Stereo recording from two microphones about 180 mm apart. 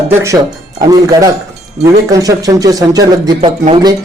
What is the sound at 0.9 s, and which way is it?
Speech, 20° right (ahead or behind).